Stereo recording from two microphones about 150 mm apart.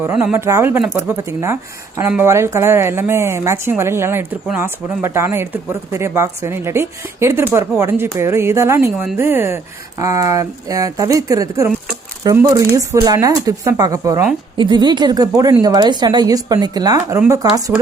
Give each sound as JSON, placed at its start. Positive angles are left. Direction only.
{"t": 0.0, "sound": "a woman's voice", "side_deg": -10}